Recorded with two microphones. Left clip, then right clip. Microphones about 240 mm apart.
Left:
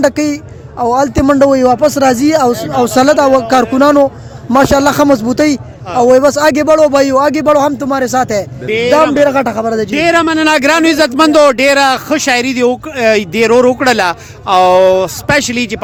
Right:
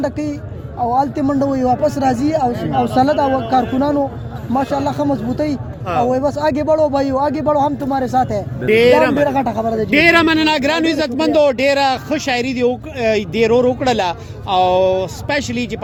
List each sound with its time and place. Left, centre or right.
0.0 s a man's voice: left
8.6 s a man's voice: centre
9.1 s a man's voice: left
9.9 s a man's voice: left